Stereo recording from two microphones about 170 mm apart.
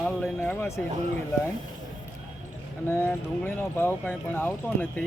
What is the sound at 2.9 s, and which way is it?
Speech, 10° left (ahead or behind).